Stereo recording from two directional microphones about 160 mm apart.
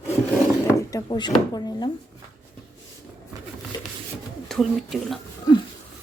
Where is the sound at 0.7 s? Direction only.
25° left (ahead or behind).